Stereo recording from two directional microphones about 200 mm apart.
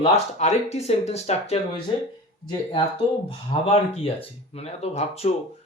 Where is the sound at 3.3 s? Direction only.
25° left (ahead or behind).